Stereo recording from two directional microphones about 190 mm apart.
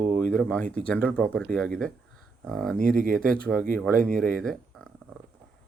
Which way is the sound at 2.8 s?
45° right (ahead or behind).